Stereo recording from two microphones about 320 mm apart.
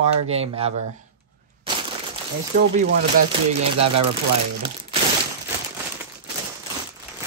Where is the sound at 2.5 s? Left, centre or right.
Right.